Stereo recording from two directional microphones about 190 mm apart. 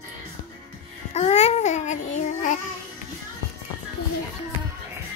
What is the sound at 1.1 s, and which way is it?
Babbling, 35° left (ahead or behind).